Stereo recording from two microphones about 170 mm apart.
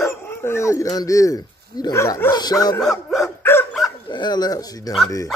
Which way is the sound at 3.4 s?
10° left (ahead or behind).